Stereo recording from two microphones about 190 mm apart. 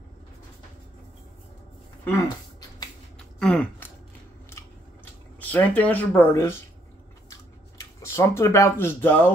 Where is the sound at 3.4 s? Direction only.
5° left (ahead or behind).